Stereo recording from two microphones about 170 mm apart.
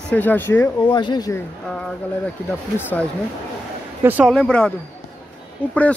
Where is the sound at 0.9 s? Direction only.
25° left (ahead or behind).